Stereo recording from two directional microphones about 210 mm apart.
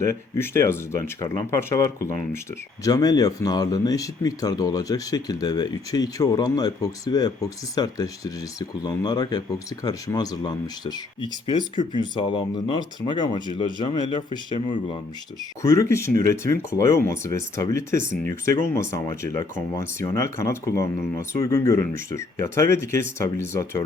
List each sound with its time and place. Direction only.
0.0 s speech: 10° left (ahead or behind)
15.6 s speech: 15° left (ahead or behind)